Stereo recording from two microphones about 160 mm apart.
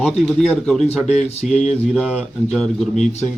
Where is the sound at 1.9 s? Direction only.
5° left (ahead or behind).